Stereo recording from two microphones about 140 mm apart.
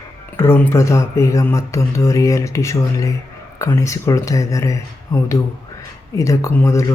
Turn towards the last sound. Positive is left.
turn(degrees=20)  # may be behind; listen again after turning